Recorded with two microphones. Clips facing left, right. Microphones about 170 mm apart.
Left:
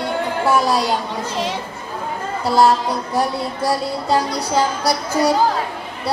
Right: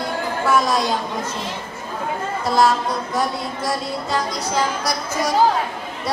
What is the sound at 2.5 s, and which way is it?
Speech, 30° left (ahead or behind).